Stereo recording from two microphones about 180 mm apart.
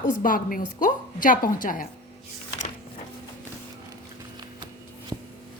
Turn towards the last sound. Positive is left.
turn(degrees=-15)  # may be behind; listen again after turning